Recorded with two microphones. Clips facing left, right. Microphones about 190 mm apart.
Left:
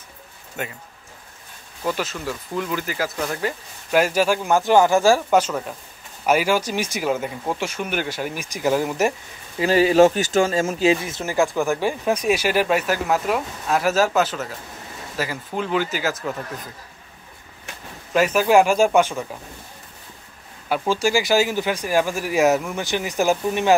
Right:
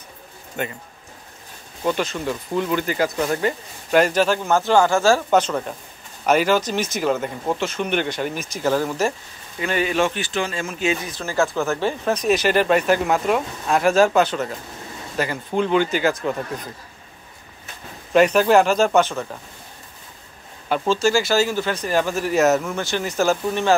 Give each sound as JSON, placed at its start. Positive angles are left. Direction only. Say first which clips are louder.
{"t": 0.6, "sound": "speech", "louder": "right 3 dB", "side_deg": 5}
{"t": 1.9, "sound": "speech", "louder": "right 3 dB", "side_deg": 5}
{"t": 9.6, "sound": "speech", "louder": "left 7 dB", "side_deg": 30}
{"t": 10.9, "sound": "speech", "louder": "left 4 dB", "side_deg": 20}
{"t": 18.1, "sound": "speech", "louder": "right 2 dB", "side_deg": 5}
{"t": 20.6, "sound": "speech", "louder": "right 2 dB", "side_deg": 10}